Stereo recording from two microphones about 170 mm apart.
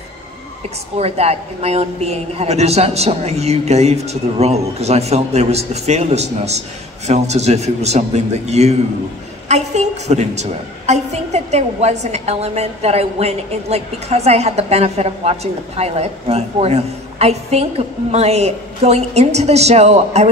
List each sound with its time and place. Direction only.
0.9 s a woman's voice: 40° right (ahead or behind)